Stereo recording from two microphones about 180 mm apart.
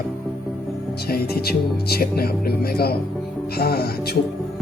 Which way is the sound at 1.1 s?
60° left (ahead or behind).